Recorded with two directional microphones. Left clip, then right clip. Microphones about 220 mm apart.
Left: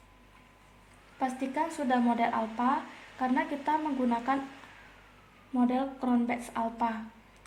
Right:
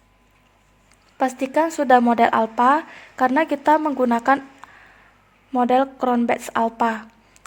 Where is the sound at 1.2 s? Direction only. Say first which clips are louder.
Right 12 dB; 50° right (ahead or behind).